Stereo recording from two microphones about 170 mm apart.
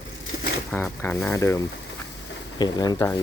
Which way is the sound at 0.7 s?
10° left (ahead or behind).